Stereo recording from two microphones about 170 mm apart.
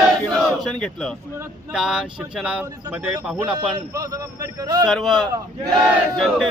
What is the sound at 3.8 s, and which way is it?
A man's voice, 20° right (ahead or behind).